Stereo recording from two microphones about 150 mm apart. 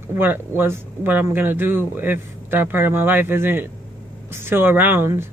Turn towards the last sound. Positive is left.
turn(degrees=-15)  # may be behind; listen again after turning